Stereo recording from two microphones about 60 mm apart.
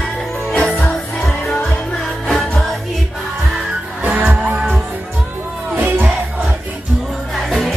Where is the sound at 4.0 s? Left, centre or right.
Right.